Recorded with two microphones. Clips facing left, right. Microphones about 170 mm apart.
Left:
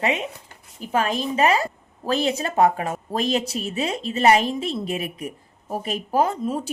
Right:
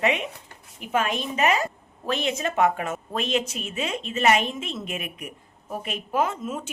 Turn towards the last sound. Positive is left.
turn(degrees=35)  # may be behind; listen again after turning